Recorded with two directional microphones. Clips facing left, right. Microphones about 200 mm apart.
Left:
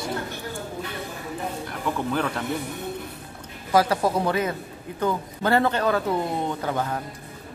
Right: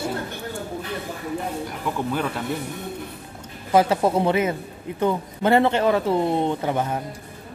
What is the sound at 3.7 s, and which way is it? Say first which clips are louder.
Speech: right 2 dB; 25° right (ahead or behind).